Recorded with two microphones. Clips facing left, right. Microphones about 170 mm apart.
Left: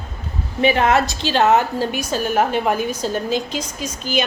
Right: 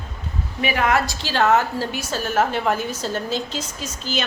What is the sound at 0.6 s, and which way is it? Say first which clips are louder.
A woman's voice: left 5 dB; 25° left (ahead or behind).